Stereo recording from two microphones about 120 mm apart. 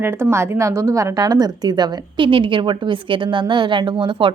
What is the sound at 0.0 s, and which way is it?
A woman's voice, 20° right (ahead or behind).